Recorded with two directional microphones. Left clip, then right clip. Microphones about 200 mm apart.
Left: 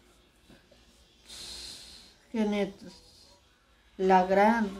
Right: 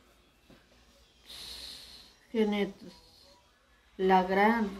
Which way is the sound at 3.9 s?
5° left (ahead or behind).